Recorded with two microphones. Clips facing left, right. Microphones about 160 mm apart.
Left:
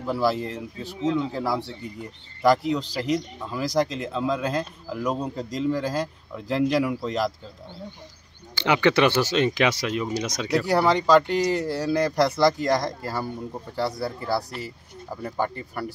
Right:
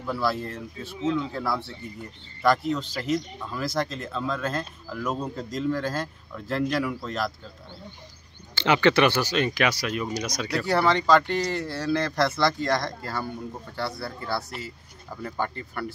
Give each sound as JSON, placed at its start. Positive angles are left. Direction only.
{"t": 0.0, "sound": "speech", "side_deg": 15}
{"t": 2.7, "sound": "speech", "side_deg": 15}
{"t": 8.5, "sound": "speech", "side_deg": 15}